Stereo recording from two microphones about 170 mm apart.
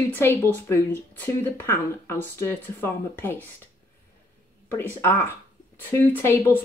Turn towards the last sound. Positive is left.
turn(degrees=15)  # may be behind; listen again after turning